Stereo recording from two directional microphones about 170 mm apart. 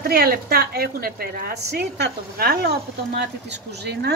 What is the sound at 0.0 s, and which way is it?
A woman's voice, 65° right (ahead or behind).